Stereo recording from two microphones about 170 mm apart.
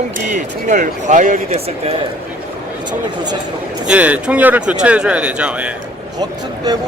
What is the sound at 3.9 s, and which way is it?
Speech, 10° right (ahead or behind).